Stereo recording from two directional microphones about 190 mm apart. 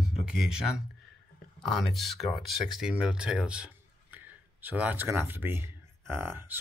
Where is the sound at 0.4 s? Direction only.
5° right (ahead or behind).